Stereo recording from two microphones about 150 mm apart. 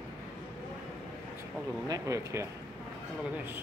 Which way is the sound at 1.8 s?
20° right (ahead or behind).